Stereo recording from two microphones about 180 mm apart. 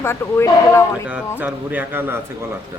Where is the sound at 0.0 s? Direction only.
15° left (ahead or behind).